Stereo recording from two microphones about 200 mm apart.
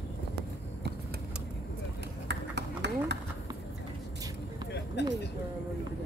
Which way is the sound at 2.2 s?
60° right (ahead or behind).